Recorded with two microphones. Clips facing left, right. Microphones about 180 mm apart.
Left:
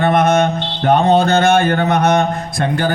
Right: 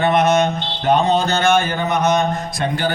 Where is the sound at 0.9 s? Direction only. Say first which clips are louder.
Left 4 dB; 55° left (ahead or behind).